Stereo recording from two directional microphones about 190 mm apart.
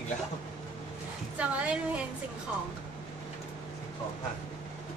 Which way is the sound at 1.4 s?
5° right (ahead or behind).